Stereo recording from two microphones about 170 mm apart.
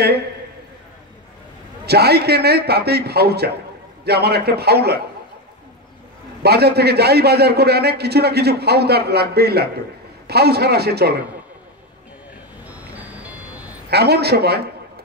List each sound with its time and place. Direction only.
1.9 s a man's voice: 70° right (ahead or behind)
6.4 s a man's voice: 70° right (ahead or behind)
13.8 s a man's voice: 70° right (ahead or behind)